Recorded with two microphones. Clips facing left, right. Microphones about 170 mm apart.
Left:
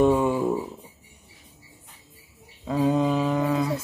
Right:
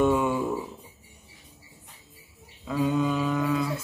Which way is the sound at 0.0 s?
35° left (ahead or behind).